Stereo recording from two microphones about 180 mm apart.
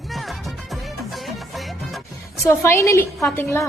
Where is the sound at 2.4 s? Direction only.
15° left (ahead or behind).